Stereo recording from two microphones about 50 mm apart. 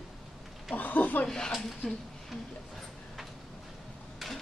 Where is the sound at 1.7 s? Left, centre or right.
Centre.